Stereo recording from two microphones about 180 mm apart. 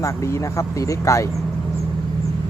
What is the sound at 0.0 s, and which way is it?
Speech, 15° left (ahead or behind).